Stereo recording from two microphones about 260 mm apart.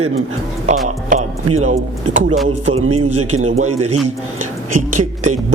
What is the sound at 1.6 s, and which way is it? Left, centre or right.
Speech, right.